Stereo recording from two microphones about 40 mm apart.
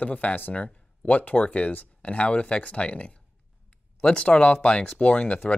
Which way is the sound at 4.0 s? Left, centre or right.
Left.